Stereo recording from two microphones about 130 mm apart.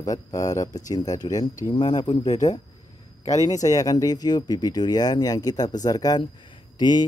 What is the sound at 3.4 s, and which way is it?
Speech, 25° left (ahead or behind).